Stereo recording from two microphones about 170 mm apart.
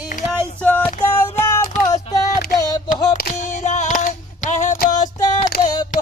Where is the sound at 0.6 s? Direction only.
10° left (ahead or behind).